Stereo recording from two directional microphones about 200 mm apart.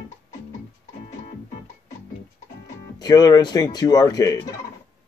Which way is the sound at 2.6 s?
20° left (ahead or behind).